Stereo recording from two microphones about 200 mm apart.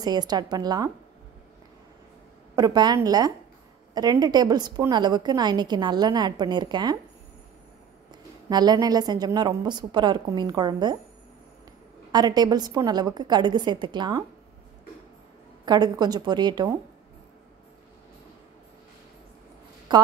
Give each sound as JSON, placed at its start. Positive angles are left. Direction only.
{"t": 0.0, "sound": "a woman's voice", "side_deg": -20}
{"t": 2.5, "sound": "a woman's voice", "side_deg": -20}
{"t": 8.1, "sound": "a woman's voice", "side_deg": -20}
{"t": 12.1, "sound": "a woman's voice", "side_deg": -20}
{"t": 15.6, "sound": "a woman's voice", "side_deg": -20}
{"t": 19.9, "sound": "a woman's voice", "side_deg": -20}